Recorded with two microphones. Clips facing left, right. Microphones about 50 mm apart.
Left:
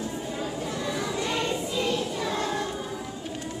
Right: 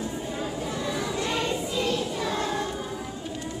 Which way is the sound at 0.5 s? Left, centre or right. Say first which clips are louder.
Right 1 dB; centre.